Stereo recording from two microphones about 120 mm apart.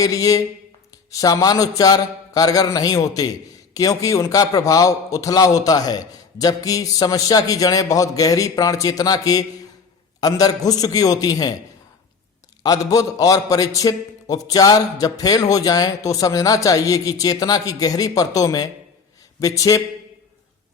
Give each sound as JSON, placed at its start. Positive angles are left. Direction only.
{"t": 0.0, "sound": "a man's voice", "side_deg": 30}
{"t": 12.6, "sound": "a man's voice", "side_deg": 30}